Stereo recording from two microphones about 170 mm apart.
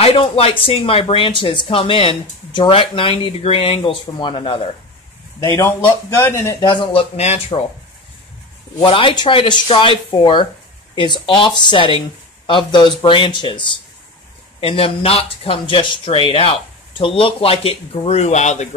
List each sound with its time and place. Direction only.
0.0 s speech: 35° left (ahead or behind)
5.6 s a man's voice: 15° left (ahead or behind); by 7.6 s 40° left (ahead or behind)
8.7 s a man's voice: 30° left (ahead or behind)